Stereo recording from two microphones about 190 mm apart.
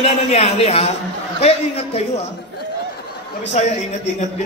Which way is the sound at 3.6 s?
40° left (ahead or behind).